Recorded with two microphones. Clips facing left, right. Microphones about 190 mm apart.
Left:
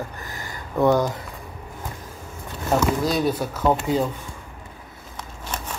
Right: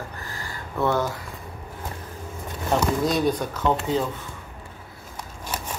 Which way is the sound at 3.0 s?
Centre (ahead or behind).